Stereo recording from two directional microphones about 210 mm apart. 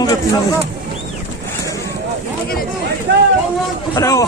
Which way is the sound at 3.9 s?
15° left (ahead or behind).